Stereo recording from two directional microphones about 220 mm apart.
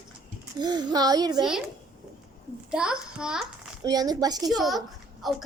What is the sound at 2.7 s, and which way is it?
A child's voice, 5° right (ahead or behind).